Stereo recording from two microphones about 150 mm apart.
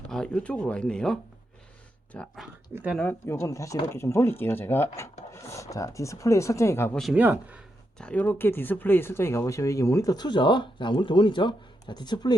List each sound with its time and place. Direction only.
0.1 s speech: 5° left (ahead or behind)
2.9 s speech: 10° left (ahead or behind)
6.9 s speech: centre (ahead or behind)
7.2 s speech: 10° right (ahead or behind)
7.9 s speech: 10° left (ahead or behind); by 12.3 s 30° left (ahead or behind)